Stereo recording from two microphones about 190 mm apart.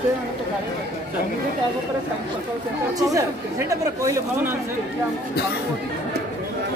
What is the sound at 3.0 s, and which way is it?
Speech, 15° right (ahead or behind).